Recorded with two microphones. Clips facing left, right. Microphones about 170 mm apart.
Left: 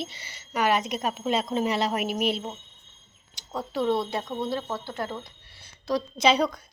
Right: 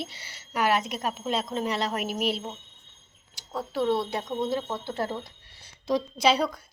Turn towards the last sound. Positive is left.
turn(degrees=-5)  # may be behind; listen again after turning